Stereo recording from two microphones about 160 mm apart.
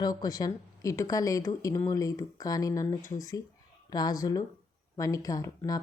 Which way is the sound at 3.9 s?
25° left (ahead or behind).